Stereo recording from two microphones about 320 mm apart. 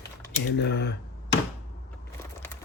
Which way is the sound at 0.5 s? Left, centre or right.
Left.